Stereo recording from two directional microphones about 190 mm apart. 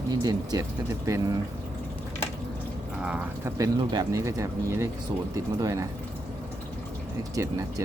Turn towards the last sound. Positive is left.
turn(degrees=-15)  # may be behind; listen again after turning